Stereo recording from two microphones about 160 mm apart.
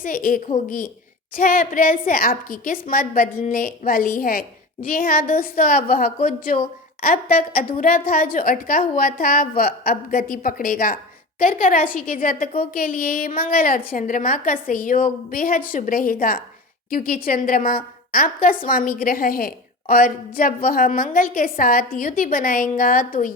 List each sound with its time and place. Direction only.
0.0 s a woman's voice: 60° left (ahead or behind)